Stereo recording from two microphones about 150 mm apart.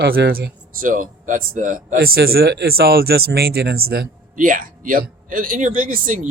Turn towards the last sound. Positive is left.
turn(degrees=-60)  # may be behind; listen again after turning